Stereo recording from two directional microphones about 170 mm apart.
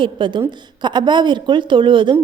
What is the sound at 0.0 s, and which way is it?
A woman's voice, 30° right (ahead or behind).